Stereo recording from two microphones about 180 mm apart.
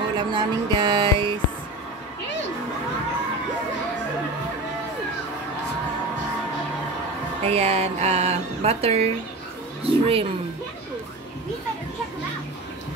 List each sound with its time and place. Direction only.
0.2 s speech: 25° right (ahead or behind)
7.4 s speech: 35° right (ahead or behind)